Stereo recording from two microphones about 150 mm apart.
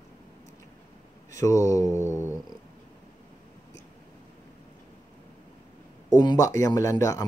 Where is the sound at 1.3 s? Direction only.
20° left (ahead or behind).